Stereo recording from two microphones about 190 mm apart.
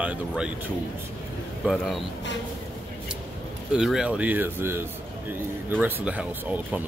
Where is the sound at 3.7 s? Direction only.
5° right (ahead or behind).